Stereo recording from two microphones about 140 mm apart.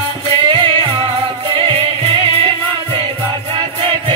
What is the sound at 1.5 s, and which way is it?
Music, 40° right (ahead or behind).